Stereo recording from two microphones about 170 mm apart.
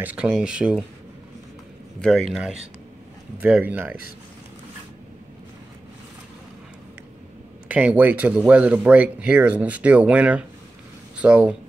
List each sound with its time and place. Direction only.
0.0 s speech: 10° right (ahead or behind)
2.0 s speech: 5° left (ahead or behind)
3.3 s speech: 10° right (ahead or behind)
7.6 s speech: 10° right (ahead or behind)